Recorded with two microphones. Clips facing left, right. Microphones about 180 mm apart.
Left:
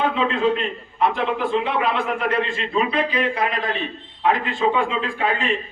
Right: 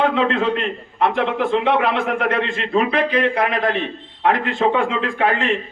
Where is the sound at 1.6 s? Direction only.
70° right (ahead or behind).